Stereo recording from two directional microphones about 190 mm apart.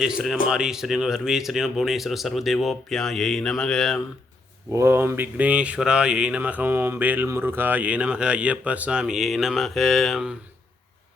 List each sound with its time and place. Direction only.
0.0 s speech: centre (ahead or behind)
4.7 s speech: 15° right (ahead or behind)